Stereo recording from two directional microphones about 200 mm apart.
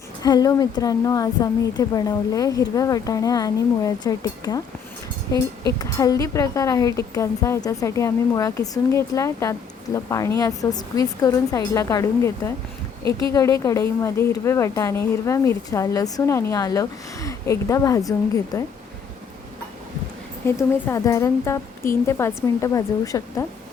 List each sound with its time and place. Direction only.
0.2 s a woman's voice: 20° left (ahead or behind)
20.6 s a woman's voice: 15° left (ahead or behind)